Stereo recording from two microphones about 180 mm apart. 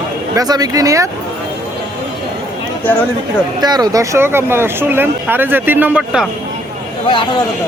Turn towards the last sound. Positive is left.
turn(degrees=30)  # may be behind; listen again after turning